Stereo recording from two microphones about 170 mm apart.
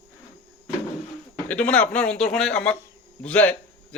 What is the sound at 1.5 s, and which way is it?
Speech, 10° left (ahead or behind).